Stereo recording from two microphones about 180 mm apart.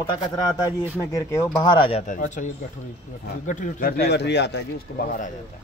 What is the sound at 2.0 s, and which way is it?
Speech, 45° left (ahead or behind).